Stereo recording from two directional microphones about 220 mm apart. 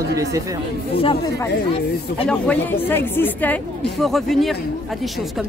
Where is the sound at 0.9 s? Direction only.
25° left (ahead or behind).